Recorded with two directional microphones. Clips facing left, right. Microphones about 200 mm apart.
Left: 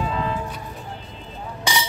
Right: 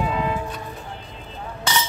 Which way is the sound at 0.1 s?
15° right (ahead or behind).